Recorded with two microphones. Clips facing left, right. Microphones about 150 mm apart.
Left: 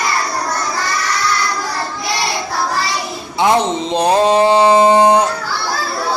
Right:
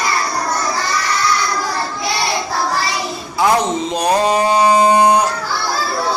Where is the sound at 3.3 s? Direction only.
25° left (ahead or behind).